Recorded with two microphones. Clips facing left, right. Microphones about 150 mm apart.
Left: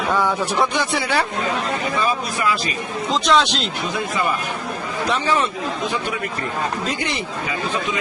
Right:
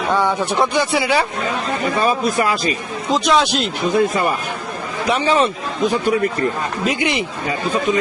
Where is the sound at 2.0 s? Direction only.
40° right (ahead or behind).